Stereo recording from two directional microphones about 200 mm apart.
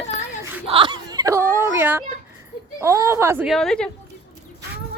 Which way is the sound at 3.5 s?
Centre (ahead or behind).